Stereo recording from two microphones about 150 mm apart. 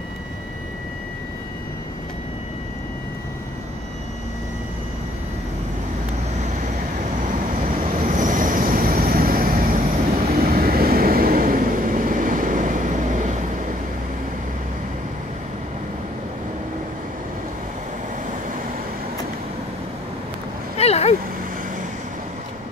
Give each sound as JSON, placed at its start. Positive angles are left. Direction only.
{"t": 7.2, "sound": "vehicle", "side_deg": -65}
{"t": 10.3, "sound": "vehicle", "side_deg": -85}
{"t": 20.7, "sound": "vehicle", "side_deg": 45}